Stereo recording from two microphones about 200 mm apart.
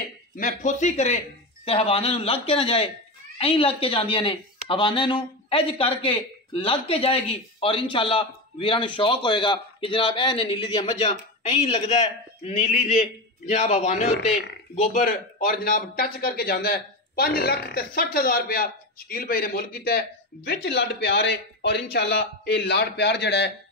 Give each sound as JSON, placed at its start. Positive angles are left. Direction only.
{"t": 0.4, "sound": "a man's voice", "side_deg": 40}